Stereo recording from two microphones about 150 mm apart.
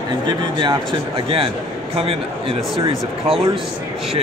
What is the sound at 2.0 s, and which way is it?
Speech, 40° right (ahead or behind).